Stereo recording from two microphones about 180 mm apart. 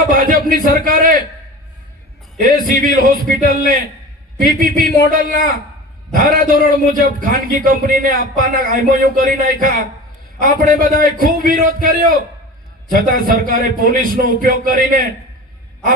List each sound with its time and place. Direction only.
0.1 s a sound: 50° right (ahead or behind)
0.5 s a man's voice: 50° right (ahead or behind)
2.4 s a man's voice: 50° right (ahead or behind)
6.1 s a man's voice: 50° right (ahead or behind)